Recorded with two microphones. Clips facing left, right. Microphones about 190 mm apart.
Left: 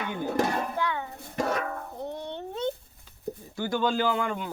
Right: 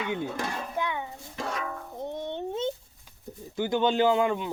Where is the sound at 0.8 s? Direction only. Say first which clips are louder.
Left 1 dB; 20° right (ahead or behind).